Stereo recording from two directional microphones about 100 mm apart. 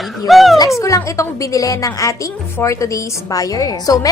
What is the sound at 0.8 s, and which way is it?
A woman's voice, 30° left (ahead or behind).